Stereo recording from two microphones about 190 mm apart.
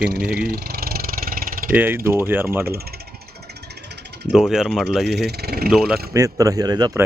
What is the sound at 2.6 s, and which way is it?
Speech, 55° right (ahead or behind).